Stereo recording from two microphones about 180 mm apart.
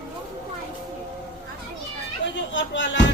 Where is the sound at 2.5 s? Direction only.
90° left.